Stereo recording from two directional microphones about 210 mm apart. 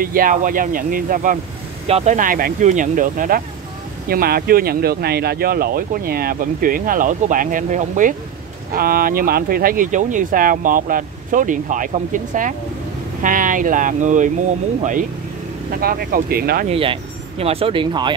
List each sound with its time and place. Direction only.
0.0 s speech: 45° right (ahead or behind)
16.6 s speech: 25° right (ahead or behind)